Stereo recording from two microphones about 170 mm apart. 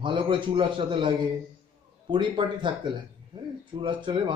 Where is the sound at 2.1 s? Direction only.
30° right (ahead or behind).